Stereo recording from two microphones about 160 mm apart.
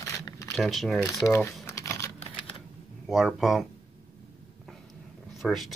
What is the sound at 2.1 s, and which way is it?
Typing, 40° left (ahead or behind).